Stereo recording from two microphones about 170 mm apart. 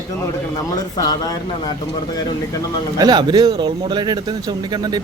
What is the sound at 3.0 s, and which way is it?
Speech, 25° right (ahead or behind).